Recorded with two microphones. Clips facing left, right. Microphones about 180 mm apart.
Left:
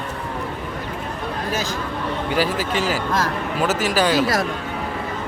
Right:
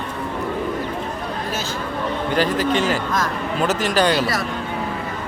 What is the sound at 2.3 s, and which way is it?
Speech, 5° left (ahead or behind).